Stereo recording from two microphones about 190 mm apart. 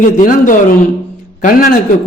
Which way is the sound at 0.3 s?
45° left (ahead or behind).